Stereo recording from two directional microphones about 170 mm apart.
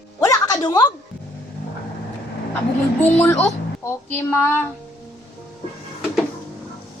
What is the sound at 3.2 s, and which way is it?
Female singing, 10° left (ahead or behind).